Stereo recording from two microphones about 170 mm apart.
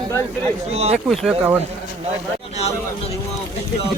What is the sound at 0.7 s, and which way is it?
Speech, 40° right (ahead or behind).